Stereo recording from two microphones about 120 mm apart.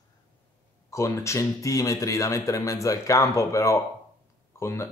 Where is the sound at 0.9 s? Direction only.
25° left (ahead or behind).